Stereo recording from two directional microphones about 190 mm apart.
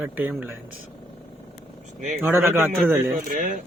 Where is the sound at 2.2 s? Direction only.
15° right (ahead or behind).